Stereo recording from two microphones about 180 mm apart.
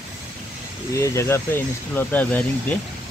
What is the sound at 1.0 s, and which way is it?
Speech, 15° left (ahead or behind).